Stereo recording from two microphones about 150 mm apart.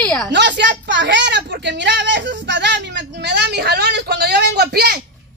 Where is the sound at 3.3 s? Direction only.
90° right.